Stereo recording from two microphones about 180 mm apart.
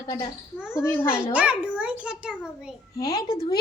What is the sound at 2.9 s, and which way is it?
Speech, 20° left (ahead or behind).